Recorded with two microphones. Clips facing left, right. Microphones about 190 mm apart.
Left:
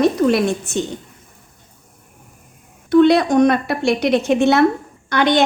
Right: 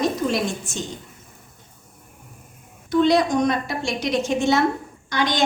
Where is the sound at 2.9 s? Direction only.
60° left (ahead or behind).